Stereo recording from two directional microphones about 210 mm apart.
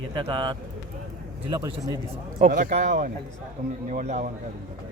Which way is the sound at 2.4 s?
40° right (ahead or behind).